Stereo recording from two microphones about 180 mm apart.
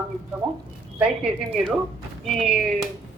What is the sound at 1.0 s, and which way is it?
Speech, 5° right (ahead or behind).